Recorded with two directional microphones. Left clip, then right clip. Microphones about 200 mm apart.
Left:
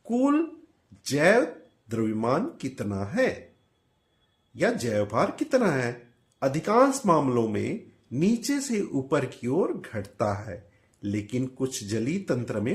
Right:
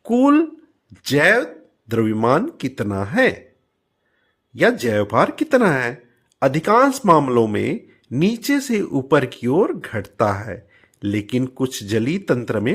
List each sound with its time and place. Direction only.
0.0 s speech: 45° right (ahead or behind)
4.5 s speech: 45° right (ahead or behind)